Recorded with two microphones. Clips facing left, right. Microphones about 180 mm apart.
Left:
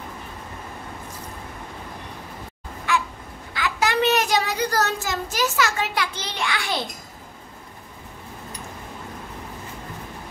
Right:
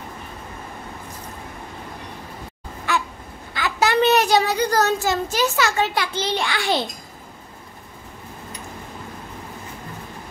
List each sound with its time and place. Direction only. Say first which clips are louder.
3.5 s a child's voice: right 3 dB; 35° right (ahead or behind)